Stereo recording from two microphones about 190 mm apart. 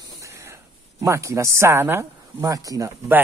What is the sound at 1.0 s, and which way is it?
Speech, 15° right (ahead or behind).